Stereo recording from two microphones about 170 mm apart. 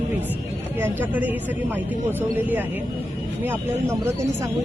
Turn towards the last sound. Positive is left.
turn(degrees=-20)  # may be behind; listen again after turning